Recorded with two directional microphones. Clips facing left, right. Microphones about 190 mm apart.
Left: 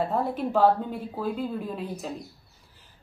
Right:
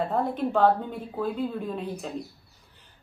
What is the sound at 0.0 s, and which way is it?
Speech, centre (ahead or behind).